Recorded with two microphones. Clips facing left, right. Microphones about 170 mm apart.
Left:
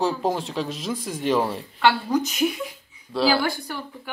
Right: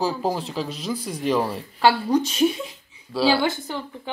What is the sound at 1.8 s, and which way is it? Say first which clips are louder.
A woman's voice: right 2 dB; 30° right (ahead or behind).